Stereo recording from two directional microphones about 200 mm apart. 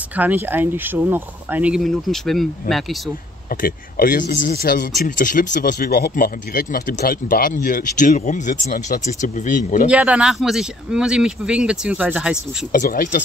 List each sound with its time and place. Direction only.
0.1 s speech: 10° right (ahead or behind)
2.6 s speech: 45° left (ahead or behind)
9.8 s speech: 5° right (ahead or behind)
12.7 s speech: 45° left (ahead or behind)